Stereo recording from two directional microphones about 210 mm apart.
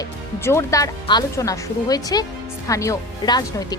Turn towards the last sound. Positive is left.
turn(degrees=20)  # may be behind; listen again after turning